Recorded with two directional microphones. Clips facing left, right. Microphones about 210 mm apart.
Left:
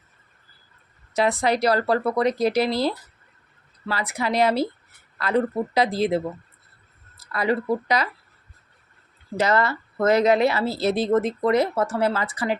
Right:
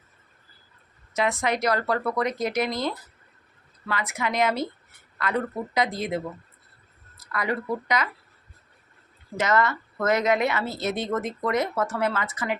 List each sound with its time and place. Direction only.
1.1 s speech: 35° left (ahead or behind)
9.4 s speech: 30° left (ahead or behind)